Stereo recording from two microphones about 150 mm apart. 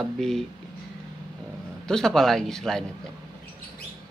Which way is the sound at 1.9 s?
5° left (ahead or behind).